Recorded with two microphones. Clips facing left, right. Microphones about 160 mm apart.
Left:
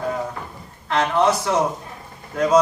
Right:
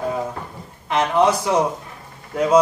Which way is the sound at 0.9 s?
15° right (ahead or behind).